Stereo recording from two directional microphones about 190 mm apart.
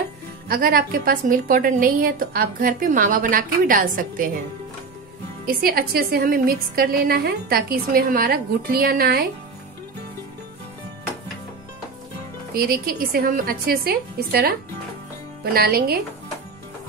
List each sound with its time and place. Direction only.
0.5 s a woman's voice: 50° right (ahead or behind)
5.6 s a woman's voice: 50° right (ahead or behind)
12.5 s a woman's voice: 50° right (ahead or behind)
15.5 s a woman's voice: 55° right (ahead or behind)